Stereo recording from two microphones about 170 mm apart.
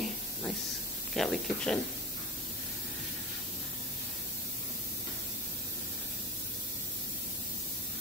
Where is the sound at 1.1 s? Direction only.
Centre (ahead or behind).